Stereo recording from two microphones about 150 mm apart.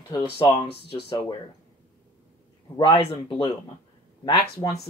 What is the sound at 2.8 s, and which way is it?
Speech, 30° left (ahead or behind).